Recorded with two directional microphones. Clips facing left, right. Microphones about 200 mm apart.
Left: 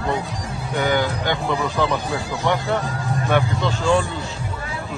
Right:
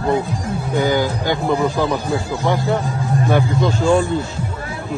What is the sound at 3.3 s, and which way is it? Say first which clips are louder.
Speech: right 2 dB; 45° right (ahead or behind).